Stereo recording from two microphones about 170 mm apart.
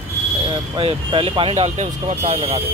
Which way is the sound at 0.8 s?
35° right (ahead or behind).